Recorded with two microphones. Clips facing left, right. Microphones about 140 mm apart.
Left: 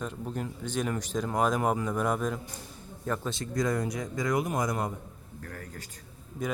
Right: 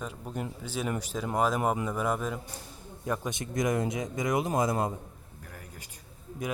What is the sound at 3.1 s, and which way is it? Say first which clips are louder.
Speech: even; 10° right (ahead or behind).